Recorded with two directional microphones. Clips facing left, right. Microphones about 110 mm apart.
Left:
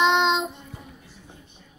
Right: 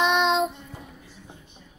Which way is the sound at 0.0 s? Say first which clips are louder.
Left 2 dB; 25° left (ahead or behind).